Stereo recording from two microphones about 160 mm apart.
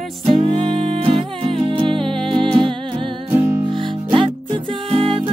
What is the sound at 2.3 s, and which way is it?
Humming, 30° right (ahead or behind).